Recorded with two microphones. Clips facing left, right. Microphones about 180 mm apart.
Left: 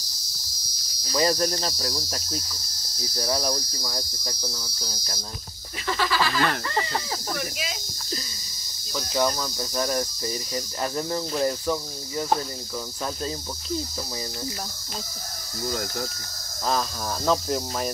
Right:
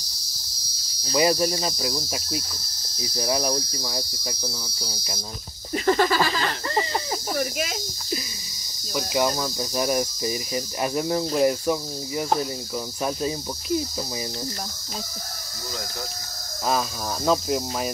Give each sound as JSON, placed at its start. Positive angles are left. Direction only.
{"t": 1.1, "sound": "cricket", "side_deg": -10}
{"t": 5.9, "sound": "speech", "side_deg": -50}
{"t": 6.7, "sound": "speech", "side_deg": -25}
{"t": 7.3, "sound": "speech", "side_deg": -50}
{"t": 8.9, "sound": "cricket", "side_deg": -15}
{"t": 16.6, "sound": "cricket", "side_deg": -10}